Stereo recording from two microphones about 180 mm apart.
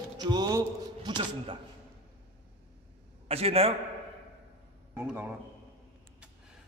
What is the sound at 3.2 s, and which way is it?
Speech, 35° right (ahead or behind).